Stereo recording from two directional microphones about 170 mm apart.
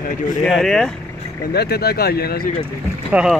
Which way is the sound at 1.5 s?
70° left (ahead or behind).